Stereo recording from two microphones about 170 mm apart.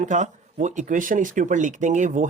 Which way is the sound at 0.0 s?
45° right (ahead or behind).